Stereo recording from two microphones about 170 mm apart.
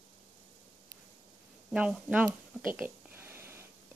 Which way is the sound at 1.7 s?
5° right (ahead or behind).